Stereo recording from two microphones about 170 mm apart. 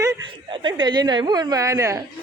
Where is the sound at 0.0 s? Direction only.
25° right (ahead or behind).